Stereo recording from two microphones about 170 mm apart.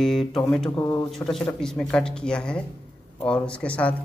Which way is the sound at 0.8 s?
20° left (ahead or behind).